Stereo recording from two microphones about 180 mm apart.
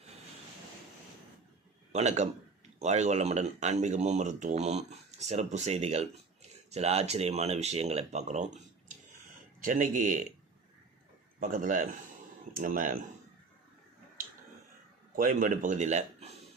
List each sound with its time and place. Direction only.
1.9 s a man's voice: 40° right (ahead or behind)
11.3 s speech: 45° right (ahead or behind)
15.1 s a man's voice: 50° right (ahead or behind)